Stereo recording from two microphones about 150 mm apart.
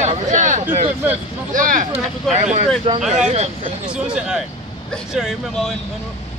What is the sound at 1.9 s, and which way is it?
Speech, 50° right (ahead or behind).